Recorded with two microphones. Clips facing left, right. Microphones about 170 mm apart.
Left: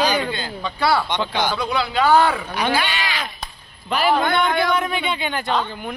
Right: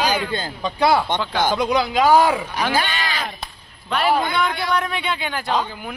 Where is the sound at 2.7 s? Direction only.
45° right (ahead or behind).